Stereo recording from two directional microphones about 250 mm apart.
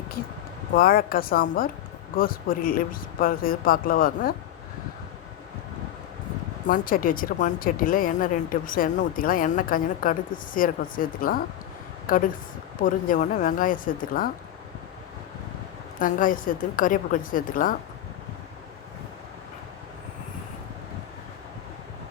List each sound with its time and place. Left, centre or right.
0.8 s speech: left
6.7 s speech: left
16.0 s speech: left